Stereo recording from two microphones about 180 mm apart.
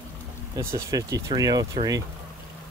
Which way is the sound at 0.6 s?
15° right (ahead or behind).